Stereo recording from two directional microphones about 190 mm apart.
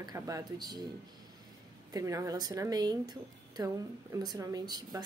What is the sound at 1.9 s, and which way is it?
Speech, 15° right (ahead or behind).